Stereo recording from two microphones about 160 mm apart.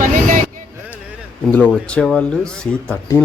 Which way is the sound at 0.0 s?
55° right (ahead or behind).